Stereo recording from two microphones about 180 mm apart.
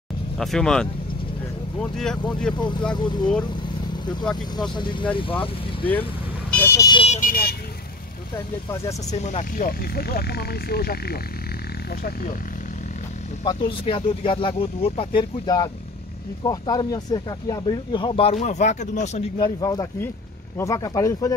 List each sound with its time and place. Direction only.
0.4 s speech: centre (ahead or behind)
3.0 s speech: 25° left (ahead or behind)
4.6 s speech: 25° left (ahead or behind)
6.6 s speech: 15° left (ahead or behind)
7.0 s speech: 40° left (ahead or behind)
9.2 s speech: 45° left (ahead or behind)
13.4 s speech: 25° left (ahead or behind)
19.3 s speech: 20° left (ahead or behind)